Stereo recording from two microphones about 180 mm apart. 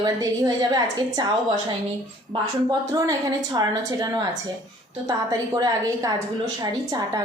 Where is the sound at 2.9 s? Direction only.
20° right (ahead or behind).